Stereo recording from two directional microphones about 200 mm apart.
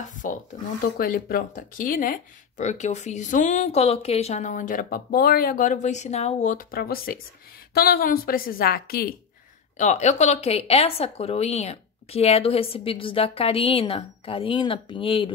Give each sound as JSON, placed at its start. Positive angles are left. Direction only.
{"t": 0.0, "sound": "a sound", "side_deg": 40}
{"t": 0.9, "sound": "a woman's voice", "side_deg": 45}
{"t": 9.8, "sound": "a woman's voice", "side_deg": 35}